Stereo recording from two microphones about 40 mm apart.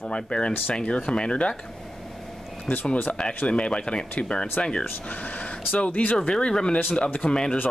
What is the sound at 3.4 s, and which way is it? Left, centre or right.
Speech, left.